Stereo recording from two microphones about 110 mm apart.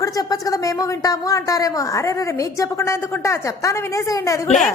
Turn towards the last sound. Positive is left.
turn(degrees=30)  # may be behind; listen again after turning